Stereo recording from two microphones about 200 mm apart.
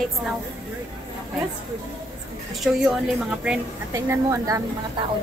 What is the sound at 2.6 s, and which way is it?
Speech, centre (ahead or behind).